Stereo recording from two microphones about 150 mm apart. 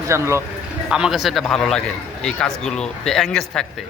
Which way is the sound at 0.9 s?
5° right (ahead or behind).